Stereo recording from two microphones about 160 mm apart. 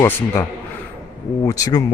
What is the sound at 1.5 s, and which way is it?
Speech, 20° left (ahead or behind).